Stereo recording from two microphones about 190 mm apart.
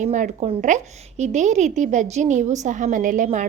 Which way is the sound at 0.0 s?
40° right (ahead or behind).